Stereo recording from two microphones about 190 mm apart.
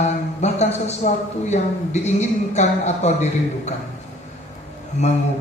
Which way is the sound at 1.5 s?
35° left (ahead or behind).